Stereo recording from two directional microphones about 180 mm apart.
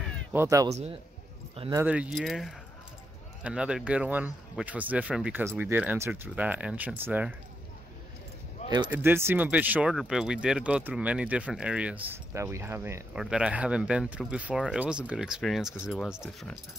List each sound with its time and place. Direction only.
0.3 s speech: 15° right (ahead or behind)
8.6 s speech: 25° right (ahead or behind)
8.9 s speech: 10° right (ahead or behind)